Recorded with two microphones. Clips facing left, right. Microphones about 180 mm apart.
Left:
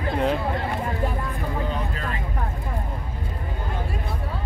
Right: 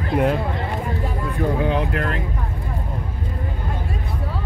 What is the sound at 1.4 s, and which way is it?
Vehicle, 70° right (ahead or behind).